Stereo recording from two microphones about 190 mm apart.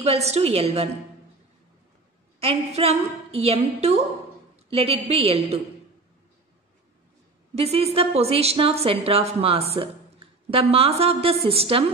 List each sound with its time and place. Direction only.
0.0 s a woman's voice: 35° right (ahead or behind)
2.4 s a woman's voice: 35° right (ahead or behind)
7.5 s a woman's voice: 30° right (ahead or behind)